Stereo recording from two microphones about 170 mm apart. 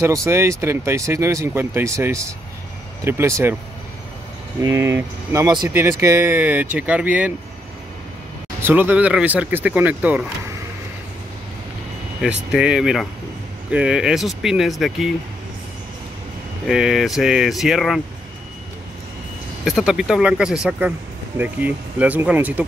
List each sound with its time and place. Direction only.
0.0 s speech: 20° right (ahead or behind)
4.6 s speech: 15° right (ahead or behind)
8.6 s speech: 10° right (ahead or behind)
12.2 s speech: 5° right (ahead or behind)
16.6 s speech: 5° right (ahead or behind)
19.6 s speech: centre (ahead or behind)